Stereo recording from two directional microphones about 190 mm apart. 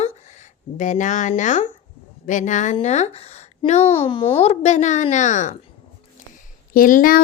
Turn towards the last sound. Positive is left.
turn(degrees=45)  # may be behind; listen again after turning